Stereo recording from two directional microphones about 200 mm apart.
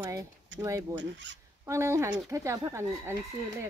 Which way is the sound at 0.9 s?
65° right (ahead or behind).